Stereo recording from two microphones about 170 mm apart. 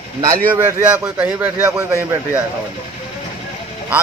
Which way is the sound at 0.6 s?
15° right (ahead or behind).